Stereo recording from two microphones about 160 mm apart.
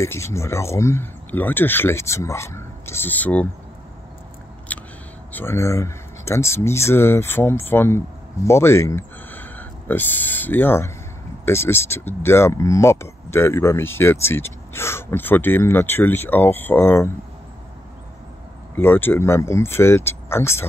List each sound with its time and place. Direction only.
0.0 s speech: 15° left (ahead or behind)
4.7 s a sound: 10° left (ahead or behind)
5.3 s speech: 15° left (ahead or behind)
18.8 s speech: 15° left (ahead or behind)